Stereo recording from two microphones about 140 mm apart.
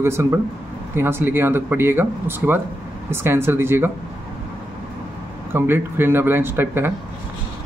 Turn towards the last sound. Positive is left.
turn(degrees=-15)  # may be behind; listen again after turning